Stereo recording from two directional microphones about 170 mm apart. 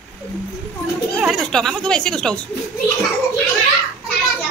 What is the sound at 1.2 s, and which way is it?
A woman's voice, centre (ahead or behind).